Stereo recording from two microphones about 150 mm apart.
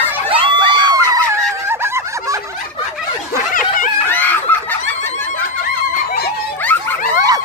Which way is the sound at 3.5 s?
65° left (ahead or behind).